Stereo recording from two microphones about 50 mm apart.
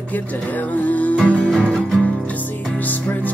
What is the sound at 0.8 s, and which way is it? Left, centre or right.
Music, left.